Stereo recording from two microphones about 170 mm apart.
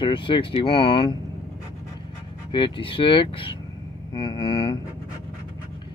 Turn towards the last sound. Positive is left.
turn(degrees=25)  # may be behind; listen again after turning